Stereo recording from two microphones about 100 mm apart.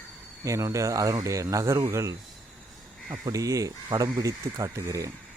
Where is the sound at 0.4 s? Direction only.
30° right (ahead or behind).